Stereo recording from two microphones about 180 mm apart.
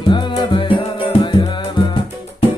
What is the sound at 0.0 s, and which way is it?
Music, 25° left (ahead or behind).